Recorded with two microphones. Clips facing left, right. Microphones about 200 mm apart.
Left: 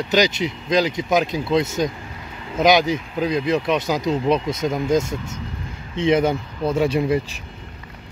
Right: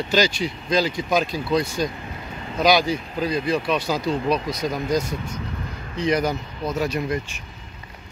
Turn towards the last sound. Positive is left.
turn(degrees=30)  # may be behind; listen again after turning